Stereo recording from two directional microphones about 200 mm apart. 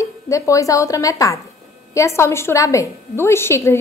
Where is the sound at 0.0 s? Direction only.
15° left (ahead or behind).